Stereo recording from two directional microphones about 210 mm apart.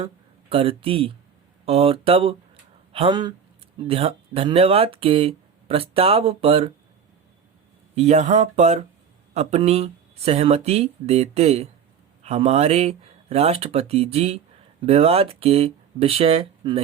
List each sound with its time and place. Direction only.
0.5 s speech: 25° right (ahead or behind)
7.9 s speech: 30° right (ahead or behind)